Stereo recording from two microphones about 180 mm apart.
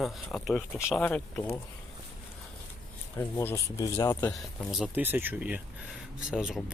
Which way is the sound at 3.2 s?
15° left (ahead or behind).